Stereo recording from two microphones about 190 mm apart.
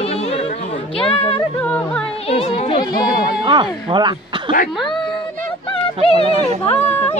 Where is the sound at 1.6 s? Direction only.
5° left (ahead or behind).